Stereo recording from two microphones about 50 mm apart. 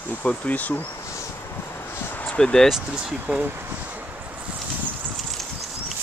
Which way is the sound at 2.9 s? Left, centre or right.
Centre.